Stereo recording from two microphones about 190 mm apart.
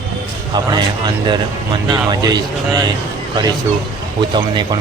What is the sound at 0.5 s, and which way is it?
Speech, 20° right (ahead or behind).